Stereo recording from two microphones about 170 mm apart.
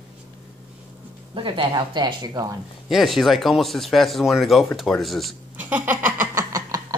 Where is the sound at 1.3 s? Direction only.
30° right (ahead or behind).